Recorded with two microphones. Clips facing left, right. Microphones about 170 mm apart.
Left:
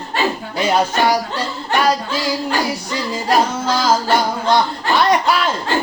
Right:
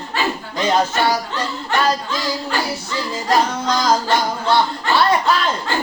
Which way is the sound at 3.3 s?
5° left (ahead or behind).